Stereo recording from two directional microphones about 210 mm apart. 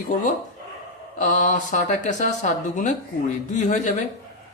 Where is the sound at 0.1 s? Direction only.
40° left (ahead or behind).